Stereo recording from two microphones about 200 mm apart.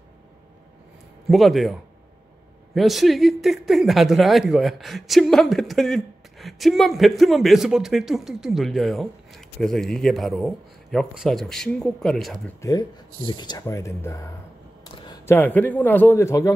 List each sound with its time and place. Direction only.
1.3 s speech: centre (ahead or behind)
13.3 s a man's voice: 20° left (ahead or behind)